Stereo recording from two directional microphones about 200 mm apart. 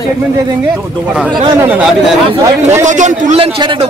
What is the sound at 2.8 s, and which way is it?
A man's voice, 40° right (ahead or behind).